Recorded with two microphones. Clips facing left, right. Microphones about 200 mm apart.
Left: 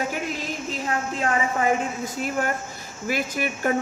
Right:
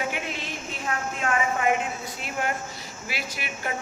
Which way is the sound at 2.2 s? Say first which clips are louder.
Left 3 dB; 45° left (ahead or behind).